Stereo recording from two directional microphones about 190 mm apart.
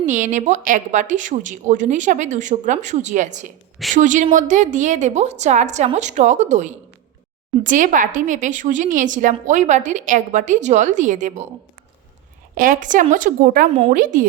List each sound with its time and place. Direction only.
0.0 s a woman's voice: 40° right (ahead or behind)
12.5 s a woman's voice: 45° right (ahead or behind)